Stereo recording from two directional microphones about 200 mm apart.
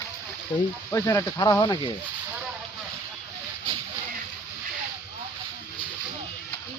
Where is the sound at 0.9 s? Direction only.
15° left (ahead or behind).